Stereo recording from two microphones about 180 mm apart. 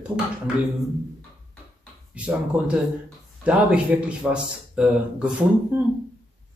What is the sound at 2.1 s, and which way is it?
A man's voice, 5° right (ahead or behind).